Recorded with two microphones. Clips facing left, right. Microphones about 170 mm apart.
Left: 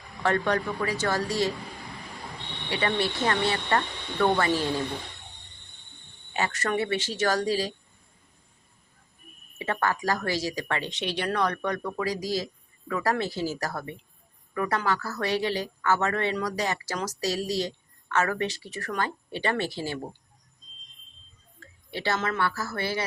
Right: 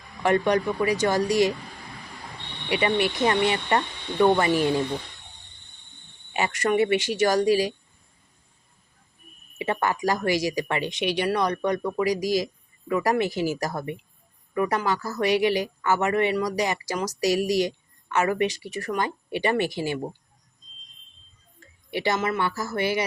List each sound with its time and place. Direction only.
0.2 s speech: 15° right (ahead or behind)
2.6 s speech: 15° right (ahead or behind)
6.3 s speech: 15° right (ahead or behind)
9.6 s speech: 15° right (ahead or behind)
21.8 s speech: 15° right (ahead or behind)